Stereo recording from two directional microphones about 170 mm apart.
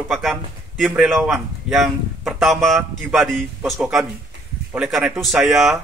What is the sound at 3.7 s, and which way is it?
Speech, 15° right (ahead or behind).